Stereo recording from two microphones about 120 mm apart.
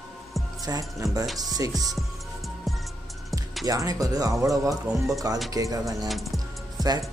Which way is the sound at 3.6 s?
30° right (ahead or behind).